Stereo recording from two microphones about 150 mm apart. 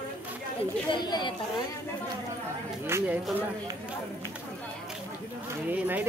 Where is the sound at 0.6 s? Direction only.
30° left (ahead or behind).